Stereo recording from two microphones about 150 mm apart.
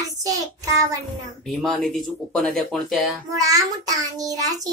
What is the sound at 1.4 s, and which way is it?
Speech, centre (ahead or behind).